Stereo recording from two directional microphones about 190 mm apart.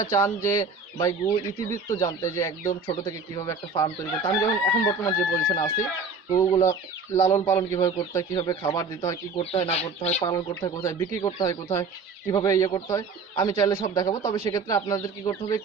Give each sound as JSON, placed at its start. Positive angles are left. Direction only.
{"t": 0.1, "sound": "speech", "side_deg": 15}
{"t": 9.4, "sound": "speech", "side_deg": 30}
{"t": 10.2, "sound": "speech", "side_deg": 20}